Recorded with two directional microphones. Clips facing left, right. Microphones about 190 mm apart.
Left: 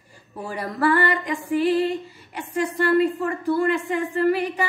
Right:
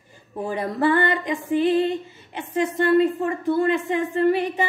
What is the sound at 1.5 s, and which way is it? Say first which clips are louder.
Music: right 1 dB; 20° right (ahead or behind).